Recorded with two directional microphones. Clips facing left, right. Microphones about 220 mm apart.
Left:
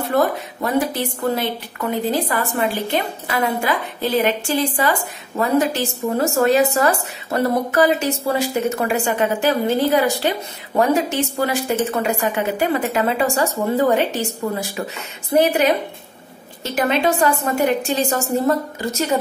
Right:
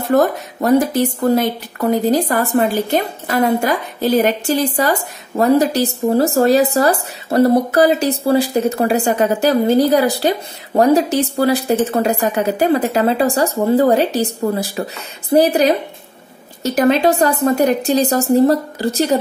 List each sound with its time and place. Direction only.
0.1 s a woman's voice: 45° right (ahead or behind)